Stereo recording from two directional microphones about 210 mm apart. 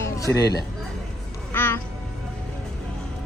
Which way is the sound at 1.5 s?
10° left (ahead or behind).